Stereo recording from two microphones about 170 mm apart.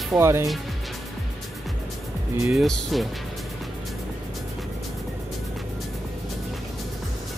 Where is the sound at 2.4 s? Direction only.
Centre (ahead or behind).